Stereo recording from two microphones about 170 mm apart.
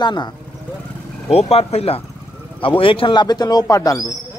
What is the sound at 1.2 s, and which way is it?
A man's voice, 35° left (ahead or behind).